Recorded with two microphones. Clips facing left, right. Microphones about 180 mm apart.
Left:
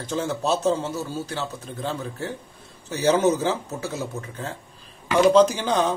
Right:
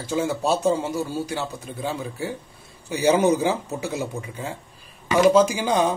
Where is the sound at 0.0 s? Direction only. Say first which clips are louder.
Right 2 dB; 10° right (ahead or behind).